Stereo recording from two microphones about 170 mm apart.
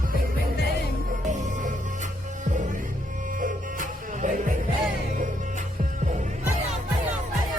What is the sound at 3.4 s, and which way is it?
Music, 50° right (ahead or behind).